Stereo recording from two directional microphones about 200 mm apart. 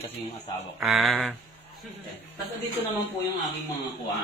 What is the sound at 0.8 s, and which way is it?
Speech, centre (ahead or behind).